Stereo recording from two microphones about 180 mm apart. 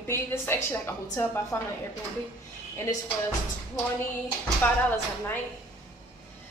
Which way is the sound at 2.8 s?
15° left (ahead or behind).